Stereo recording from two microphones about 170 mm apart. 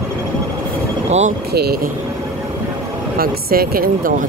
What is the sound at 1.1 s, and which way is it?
Speech, 40° right (ahead or behind).